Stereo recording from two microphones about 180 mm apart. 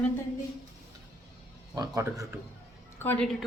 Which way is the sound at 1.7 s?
20° right (ahead or behind).